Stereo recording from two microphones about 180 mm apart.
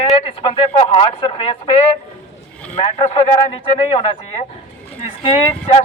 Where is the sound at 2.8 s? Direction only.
30° left (ahead or behind).